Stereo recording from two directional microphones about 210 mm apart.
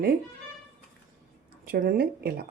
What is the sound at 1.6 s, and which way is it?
Speech, 45° right (ahead or behind).